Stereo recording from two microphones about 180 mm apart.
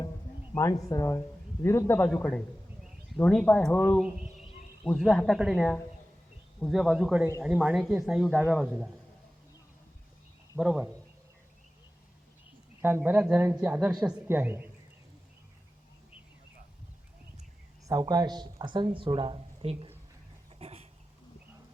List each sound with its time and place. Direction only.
0.5 s speech: 20° left (ahead or behind); by 8.9 s centre (ahead or behind)
10.6 s speech: 5° right (ahead or behind)
12.8 s speech: 10° right (ahead or behind)
18.0 s speech: 20° right (ahead or behind)
20.6 s a sound: 35° right (ahead or behind)